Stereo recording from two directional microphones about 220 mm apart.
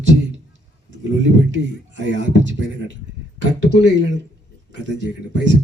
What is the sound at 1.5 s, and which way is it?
Speech, 55° right (ahead or behind).